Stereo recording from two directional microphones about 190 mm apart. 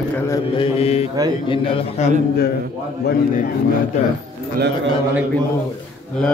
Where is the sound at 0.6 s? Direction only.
35° left (ahead or behind).